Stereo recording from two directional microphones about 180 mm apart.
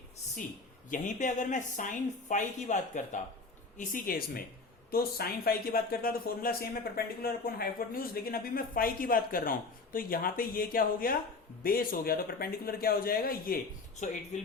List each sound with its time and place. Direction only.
0.9 s speech: 45° left (ahead or behind)